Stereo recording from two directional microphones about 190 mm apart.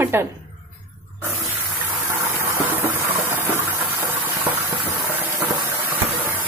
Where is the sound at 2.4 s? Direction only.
10° right (ahead or behind).